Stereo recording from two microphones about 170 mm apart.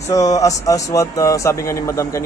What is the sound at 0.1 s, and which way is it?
A man's voice, 20° left (ahead or behind).